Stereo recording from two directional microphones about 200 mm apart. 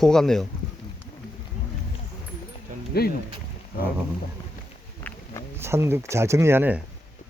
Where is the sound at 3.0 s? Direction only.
50° left (ahead or behind).